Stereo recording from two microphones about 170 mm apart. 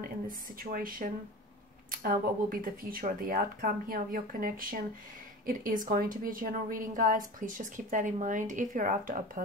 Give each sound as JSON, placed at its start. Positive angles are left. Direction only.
{"t": 0.3, "sound": "a woman's voice", "side_deg": -55}